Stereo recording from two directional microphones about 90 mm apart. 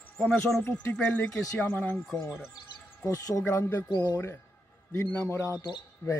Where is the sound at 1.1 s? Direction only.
15° left (ahead or behind).